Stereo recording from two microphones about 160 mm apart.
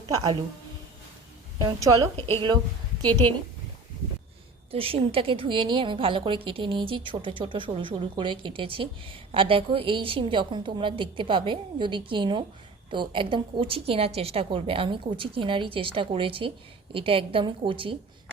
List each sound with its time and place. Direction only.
0.1 s a woman's voice: 30° right (ahead or behind)
1.5 s a woman's voice: 25° right (ahead or behind)
2.1 s a woman's voice: 35° right (ahead or behind)
4.7 s a woman's voice: 35° right (ahead or behind)